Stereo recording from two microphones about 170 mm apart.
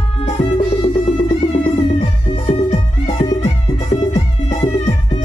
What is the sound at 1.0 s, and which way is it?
Music, 40° left (ahead or behind).